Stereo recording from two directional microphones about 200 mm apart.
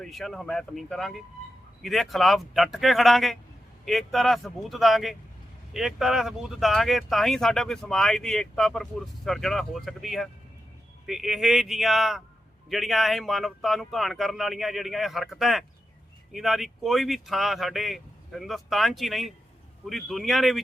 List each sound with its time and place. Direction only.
0.0 s speech: centre (ahead or behind)